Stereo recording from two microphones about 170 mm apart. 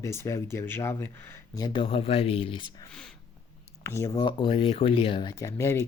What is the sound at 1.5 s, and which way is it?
Speech, 25° left (ahead or behind).